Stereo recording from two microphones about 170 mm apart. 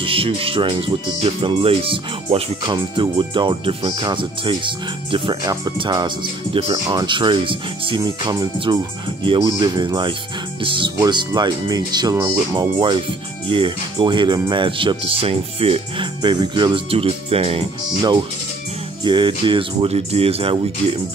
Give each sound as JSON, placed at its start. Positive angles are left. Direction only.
{"t": 0.0, "sound": "speech", "side_deg": -30}